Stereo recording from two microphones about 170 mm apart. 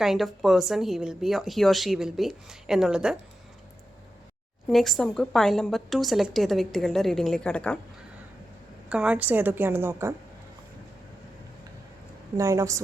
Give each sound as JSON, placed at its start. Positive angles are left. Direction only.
{"t": 0.0, "sound": "speech", "side_deg": 0}
{"t": 4.7, "sound": "speech", "side_deg": 0}
{"t": 8.9, "sound": "a woman's voice", "side_deg": -5}
{"t": 12.4, "sound": "a woman's voice", "side_deg": -20}